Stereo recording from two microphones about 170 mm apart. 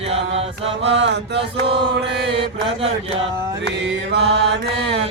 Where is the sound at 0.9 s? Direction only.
90° right.